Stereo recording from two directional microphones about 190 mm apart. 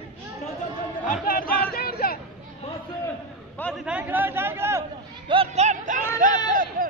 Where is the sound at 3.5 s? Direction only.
5° left (ahead or behind).